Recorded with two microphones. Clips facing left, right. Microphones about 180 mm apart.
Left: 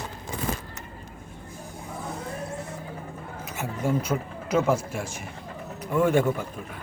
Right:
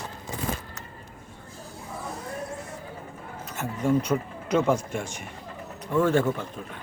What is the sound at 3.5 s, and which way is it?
Speech, 5° left (ahead or behind).